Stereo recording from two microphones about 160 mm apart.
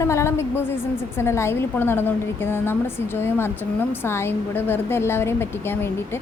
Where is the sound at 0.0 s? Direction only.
15° left (ahead or behind).